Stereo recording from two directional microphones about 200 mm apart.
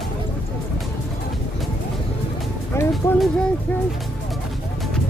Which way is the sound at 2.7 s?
15° left (ahead or behind).